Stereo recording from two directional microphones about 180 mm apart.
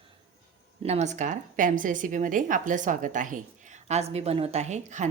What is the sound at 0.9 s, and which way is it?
A woman's voice, 40° right (ahead or behind).